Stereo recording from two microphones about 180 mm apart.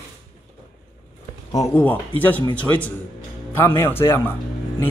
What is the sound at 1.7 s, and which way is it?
Chopping, 10° left (ahead or behind).